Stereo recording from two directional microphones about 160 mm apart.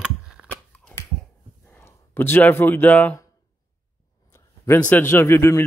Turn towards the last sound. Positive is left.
turn(degrees=15)  # may be behind; listen again after turning